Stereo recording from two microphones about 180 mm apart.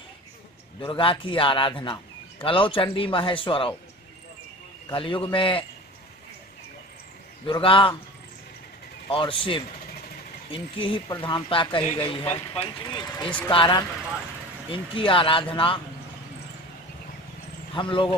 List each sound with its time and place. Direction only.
0.7 s a man's voice: 30° left (ahead or behind)
4.8 s a man's voice: 25° left (ahead or behind)
7.4 s a man's voice: 30° left (ahead or behind)
9.1 s a man's voice: 30° left (ahead or behind)
17.7 s a man's voice: 25° left (ahead or behind)